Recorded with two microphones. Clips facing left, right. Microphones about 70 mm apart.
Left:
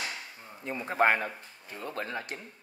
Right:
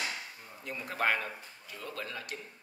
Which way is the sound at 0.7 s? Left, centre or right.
Left.